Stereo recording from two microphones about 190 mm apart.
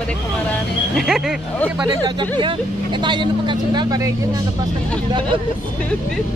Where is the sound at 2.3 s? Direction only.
25° right (ahead or behind).